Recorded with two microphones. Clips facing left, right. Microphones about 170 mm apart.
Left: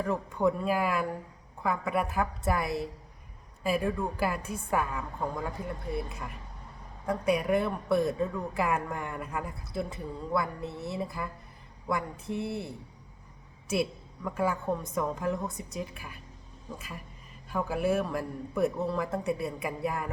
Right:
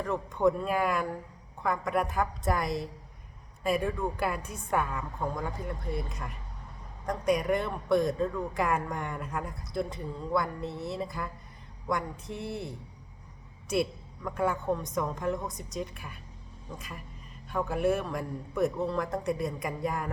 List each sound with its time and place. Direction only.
0.0 s speech: 5° left (ahead or behind)
14.3 s speech: 5° left (ahead or behind)